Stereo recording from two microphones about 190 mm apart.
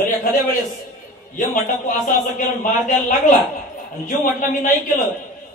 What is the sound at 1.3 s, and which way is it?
A man's voice, 45° left (ahead or behind).